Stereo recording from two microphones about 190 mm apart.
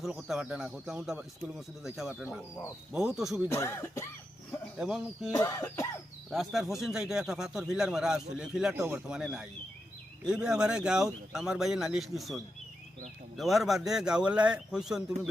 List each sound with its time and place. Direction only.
0.0 s speech: 5° right (ahead or behind)
3.5 s speech: 15° left (ahead or behind)
4.8 s speech: centre (ahead or behind)
5.3 s speech: 15° left (ahead or behind)
6.3 s speech: centre (ahead or behind)
8.7 s speech: 15° right (ahead or behind)